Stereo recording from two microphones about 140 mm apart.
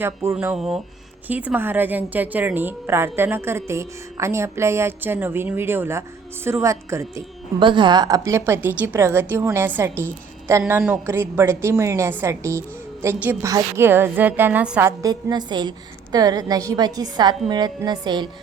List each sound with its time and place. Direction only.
0.0 s a woman's voice: 15° right (ahead or behind)
0.5 s a woman's voice: 5° right (ahead or behind); by 7.1 s 20° right (ahead or behind)
7.6 s a woman's voice: 35° right (ahead or behind); by 14.8 s 10° right (ahead or behind)
14.8 s a woman's voice: 30° right (ahead or behind)